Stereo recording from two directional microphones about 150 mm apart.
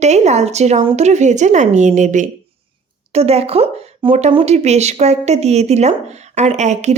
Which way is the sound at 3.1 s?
45° right (ahead or behind).